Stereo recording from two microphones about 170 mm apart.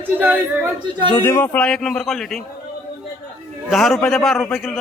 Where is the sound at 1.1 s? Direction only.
15° left (ahead or behind).